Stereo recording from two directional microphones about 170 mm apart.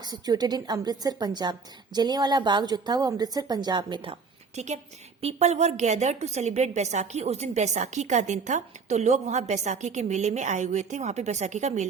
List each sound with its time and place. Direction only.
0.0 s a woman's voice: 25° right (ahead or behind); by 11.9 s 45° right (ahead or behind)